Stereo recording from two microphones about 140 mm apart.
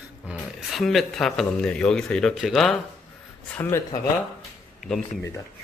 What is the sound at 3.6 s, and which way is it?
Speech, 20° left (ahead or behind).